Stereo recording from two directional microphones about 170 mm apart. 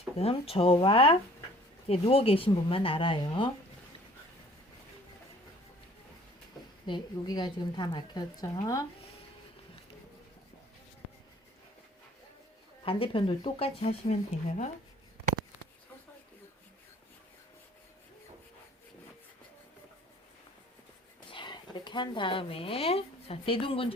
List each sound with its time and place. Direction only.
0.2 s speech: 35° left (ahead or behind)
6.8 s a woman's voice: 25° left (ahead or behind)
12.8 s speech: 35° left (ahead or behind)
21.2 s speech: 30° left (ahead or behind)